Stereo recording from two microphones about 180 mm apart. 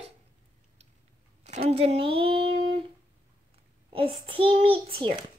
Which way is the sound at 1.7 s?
35° right (ahead or behind).